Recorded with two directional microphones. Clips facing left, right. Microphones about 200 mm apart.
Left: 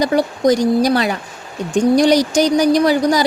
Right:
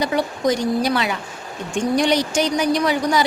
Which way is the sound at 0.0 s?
40° left (ahead or behind).